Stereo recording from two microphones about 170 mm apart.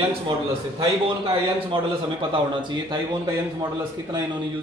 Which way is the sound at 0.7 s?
30° right (ahead or behind).